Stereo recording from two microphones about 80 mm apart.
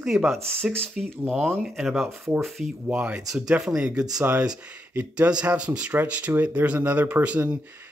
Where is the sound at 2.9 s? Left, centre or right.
Centre.